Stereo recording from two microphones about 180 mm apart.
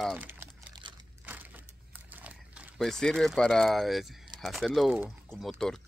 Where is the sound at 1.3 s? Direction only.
10° right (ahead or behind).